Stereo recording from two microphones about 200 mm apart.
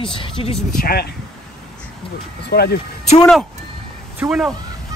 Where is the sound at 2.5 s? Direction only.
55° left (ahead or behind).